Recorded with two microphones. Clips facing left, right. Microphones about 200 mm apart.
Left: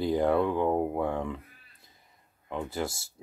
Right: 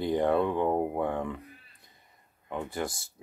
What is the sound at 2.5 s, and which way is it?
Speech, centre (ahead or behind).